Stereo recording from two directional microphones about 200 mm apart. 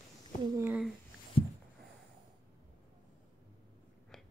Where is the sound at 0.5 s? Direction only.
5° right (ahead or behind).